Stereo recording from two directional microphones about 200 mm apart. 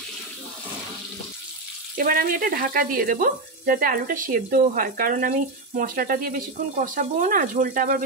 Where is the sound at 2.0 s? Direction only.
45° right (ahead or behind).